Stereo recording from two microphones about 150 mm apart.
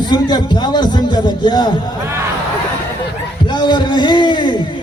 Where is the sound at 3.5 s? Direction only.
30° left (ahead or behind).